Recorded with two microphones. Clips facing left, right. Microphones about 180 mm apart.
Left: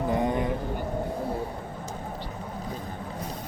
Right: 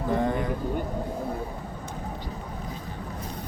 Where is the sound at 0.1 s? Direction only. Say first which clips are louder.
Right 2 dB; 20° left (ahead or behind).